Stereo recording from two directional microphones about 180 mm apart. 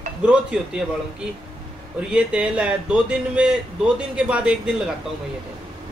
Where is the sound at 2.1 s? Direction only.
5° right (ahead or behind).